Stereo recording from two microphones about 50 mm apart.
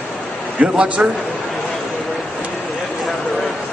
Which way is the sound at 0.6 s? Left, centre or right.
Right.